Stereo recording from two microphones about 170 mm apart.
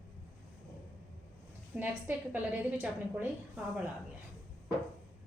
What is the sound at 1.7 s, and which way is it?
A woman's voice, 10° right (ahead or behind).